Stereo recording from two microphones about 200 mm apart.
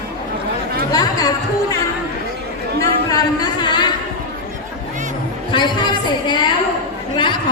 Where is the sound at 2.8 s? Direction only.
20° left (ahead or behind).